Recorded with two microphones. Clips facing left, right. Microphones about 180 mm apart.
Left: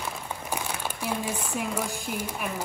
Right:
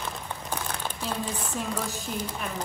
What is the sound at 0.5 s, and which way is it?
A woman's voice, 10° left (ahead or behind).